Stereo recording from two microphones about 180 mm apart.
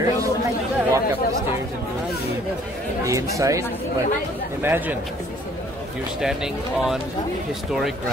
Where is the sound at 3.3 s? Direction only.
15° right (ahead or behind).